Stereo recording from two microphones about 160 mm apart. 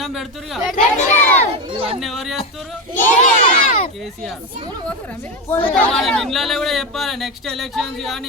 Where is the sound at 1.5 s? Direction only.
40° right (ahead or behind).